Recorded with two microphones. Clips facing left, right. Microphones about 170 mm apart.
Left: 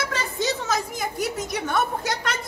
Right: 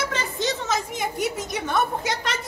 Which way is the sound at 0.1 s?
Centre (ahead or behind).